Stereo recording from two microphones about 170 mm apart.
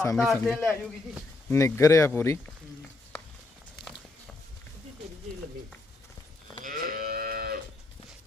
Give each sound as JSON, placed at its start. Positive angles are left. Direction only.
{"t": 0.0, "sound": "speech", "side_deg": 20}
{"t": 0.4, "sound": "a man's voice", "side_deg": 0}
{"t": 1.5, "sound": "speech", "side_deg": 15}
{"t": 6.6, "sound": "livestock", "side_deg": -55}